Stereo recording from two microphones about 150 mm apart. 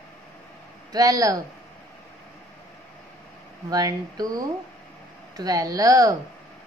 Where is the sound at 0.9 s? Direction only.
25° right (ahead or behind).